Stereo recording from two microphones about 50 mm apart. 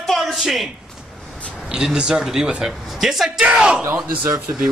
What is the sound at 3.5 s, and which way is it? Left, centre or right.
Speech, centre.